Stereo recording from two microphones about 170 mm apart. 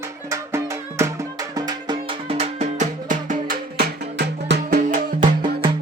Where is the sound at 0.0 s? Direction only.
15° right (ahead or behind); by 4.8 s 75° right (ahead or behind).